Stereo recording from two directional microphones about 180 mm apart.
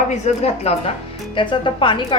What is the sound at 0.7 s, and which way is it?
A woman's voice, 35° left (ahead or behind).